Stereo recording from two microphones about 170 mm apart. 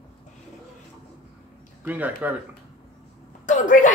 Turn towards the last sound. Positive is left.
turn(degrees=50)  # may be behind; listen again after turning